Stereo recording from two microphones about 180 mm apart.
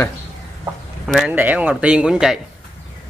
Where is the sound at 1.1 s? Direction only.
5° right (ahead or behind).